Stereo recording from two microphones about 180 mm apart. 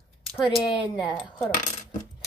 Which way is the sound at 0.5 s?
25° left (ahead or behind).